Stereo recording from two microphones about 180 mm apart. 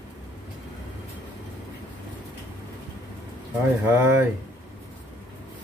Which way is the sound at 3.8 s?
10° right (ahead or behind).